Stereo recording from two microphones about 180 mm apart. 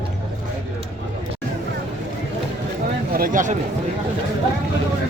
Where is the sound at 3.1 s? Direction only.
50° right (ahead or behind).